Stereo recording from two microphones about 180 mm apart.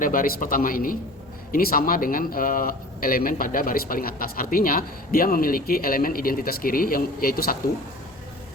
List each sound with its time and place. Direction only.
0.0 s a man's voice: 50° left (ahead or behind)